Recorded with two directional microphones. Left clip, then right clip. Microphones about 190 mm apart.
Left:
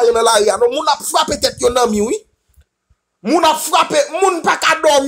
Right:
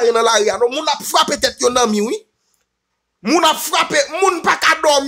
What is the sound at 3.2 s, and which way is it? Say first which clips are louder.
Speech: left 1 dB; 15° right (ahead or behind).